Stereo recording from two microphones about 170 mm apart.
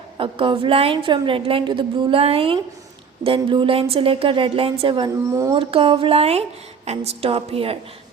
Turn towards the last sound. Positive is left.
turn(degrees=-35)  # may be behind; listen again after turning